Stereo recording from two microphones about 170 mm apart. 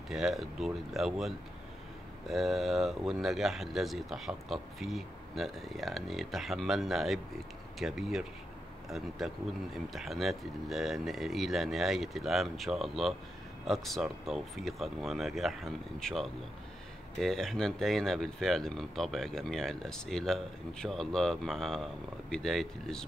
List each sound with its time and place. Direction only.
0.1 s speech: centre (ahead or behind)